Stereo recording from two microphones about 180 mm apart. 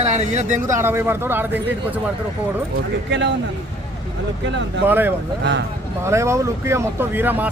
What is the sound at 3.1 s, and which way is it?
Speech, 80° right.